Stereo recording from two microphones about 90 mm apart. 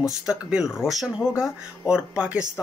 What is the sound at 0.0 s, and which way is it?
Speech, 10° right (ahead or behind).